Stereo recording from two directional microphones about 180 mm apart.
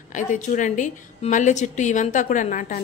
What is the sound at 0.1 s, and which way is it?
A woman's voice, 45° left (ahead or behind).